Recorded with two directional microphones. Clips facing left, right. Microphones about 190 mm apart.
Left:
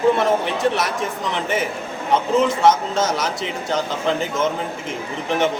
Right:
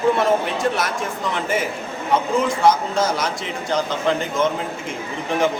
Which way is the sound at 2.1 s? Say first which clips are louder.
Left 2 dB; centre (ahead or behind).